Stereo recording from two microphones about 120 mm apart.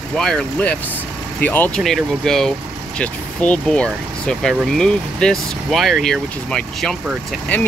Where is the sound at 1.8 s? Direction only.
5° left (ahead or behind).